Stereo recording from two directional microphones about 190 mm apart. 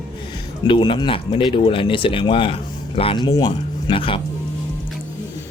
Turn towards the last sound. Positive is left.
turn(degrees=25)  # may be behind; listen again after turning